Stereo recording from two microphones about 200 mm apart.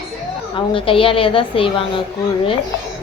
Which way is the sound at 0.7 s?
25° left (ahead or behind).